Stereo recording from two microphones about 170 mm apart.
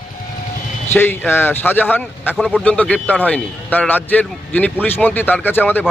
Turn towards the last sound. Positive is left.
turn(degrees=10)  # may be behind; listen again after turning